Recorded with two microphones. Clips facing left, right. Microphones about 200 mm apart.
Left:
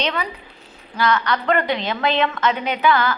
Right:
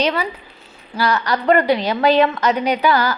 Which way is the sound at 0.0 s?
5° right (ahead or behind).